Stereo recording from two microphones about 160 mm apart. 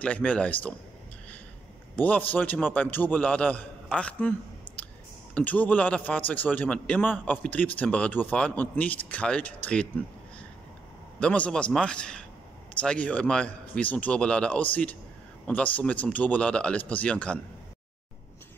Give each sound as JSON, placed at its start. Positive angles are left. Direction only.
{"t": 0.0, "sound": "a man's voice", "side_deg": 10}
{"t": 2.0, "sound": "a man's voice", "side_deg": 10}
{"t": 11.1, "sound": "a man's voice", "side_deg": 5}